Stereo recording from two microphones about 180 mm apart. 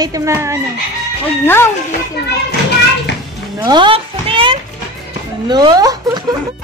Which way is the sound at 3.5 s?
25° right (ahead or behind).